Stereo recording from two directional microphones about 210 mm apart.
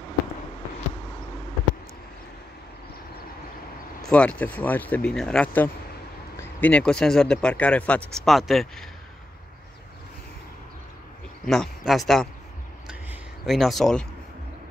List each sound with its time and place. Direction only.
4.0 s speech: 5° left (ahead or behind)
11.4 s speech: centre (ahead or behind)
12.8 s a sound: centre (ahead or behind)